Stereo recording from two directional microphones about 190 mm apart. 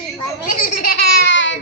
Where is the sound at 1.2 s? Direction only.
75° left (ahead or behind).